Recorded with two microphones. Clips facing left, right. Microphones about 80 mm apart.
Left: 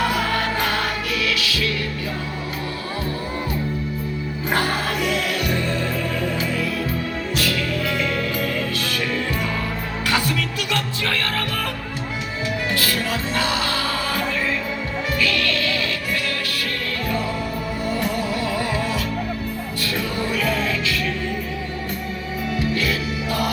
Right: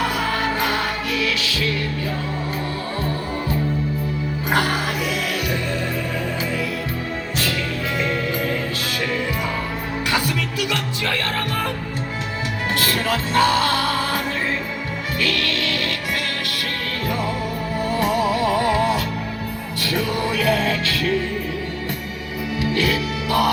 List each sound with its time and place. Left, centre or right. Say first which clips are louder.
1.2 s music: even; right
4.5 s music: right 1 dB; centre
10.1 s music: left 1 dB; centre
12.8 s music: right 2 dB; right
18.3 s music: right 5 dB; right